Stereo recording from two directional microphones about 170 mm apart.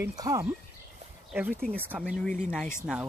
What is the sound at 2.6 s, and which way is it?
Speech, 15° left (ahead or behind).